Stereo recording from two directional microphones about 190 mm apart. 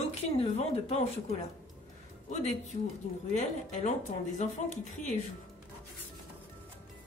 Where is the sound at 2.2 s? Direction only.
40° left (ahead or behind).